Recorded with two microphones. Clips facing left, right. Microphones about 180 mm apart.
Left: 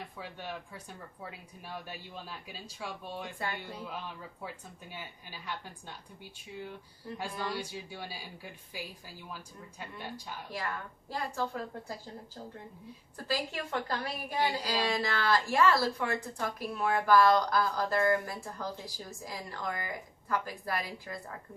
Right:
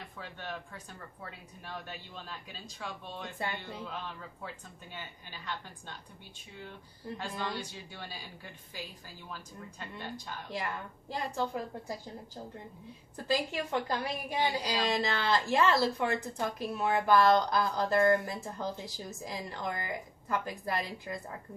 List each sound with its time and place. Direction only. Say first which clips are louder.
0.2 s speech: right 1 dB; 10° left (ahead or behind)
7.2 s speech: left 1 dB; 10° left (ahead or behind)
10.5 s speech: right 1 dB; 20° right (ahead or behind)
13.2 s a woman's voice: right 3 dB; 20° right (ahead or behind)